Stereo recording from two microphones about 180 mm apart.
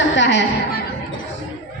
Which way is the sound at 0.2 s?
80° left.